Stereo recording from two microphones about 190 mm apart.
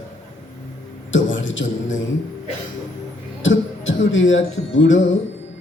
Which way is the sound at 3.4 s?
85° left.